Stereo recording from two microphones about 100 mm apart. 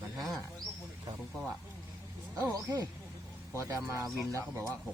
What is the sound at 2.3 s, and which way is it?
A man's voice, 40° right (ahead or behind).